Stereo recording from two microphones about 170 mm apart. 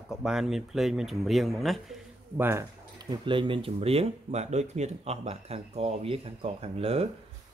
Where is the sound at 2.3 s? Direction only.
15° right (ahead or behind).